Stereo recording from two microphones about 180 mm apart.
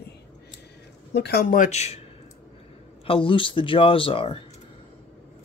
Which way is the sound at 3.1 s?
30° left (ahead or behind).